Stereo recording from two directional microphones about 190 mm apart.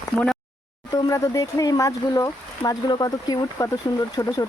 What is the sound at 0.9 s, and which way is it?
Speech, 15° left (ahead or behind).